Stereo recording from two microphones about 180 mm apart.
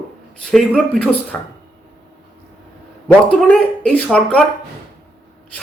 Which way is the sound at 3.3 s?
5° left (ahead or behind).